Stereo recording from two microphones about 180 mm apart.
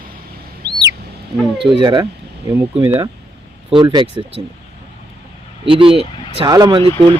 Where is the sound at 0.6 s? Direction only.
65° right (ahead or behind).